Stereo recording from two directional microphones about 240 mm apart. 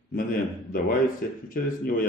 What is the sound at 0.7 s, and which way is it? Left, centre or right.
Speech, left.